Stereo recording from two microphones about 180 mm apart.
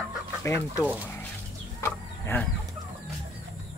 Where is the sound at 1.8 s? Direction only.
15° left (ahead or behind).